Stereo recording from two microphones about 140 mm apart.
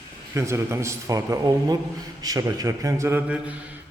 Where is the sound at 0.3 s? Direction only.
20° right (ahead or behind).